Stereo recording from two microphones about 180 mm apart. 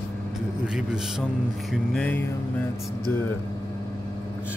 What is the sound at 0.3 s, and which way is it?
A man's voice, 5° right (ahead or behind).